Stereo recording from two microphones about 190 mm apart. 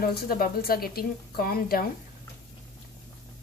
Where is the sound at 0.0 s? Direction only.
50° left (ahead or behind).